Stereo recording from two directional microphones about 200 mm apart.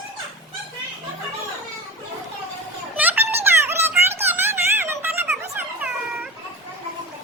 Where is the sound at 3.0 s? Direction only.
10° right (ahead or behind).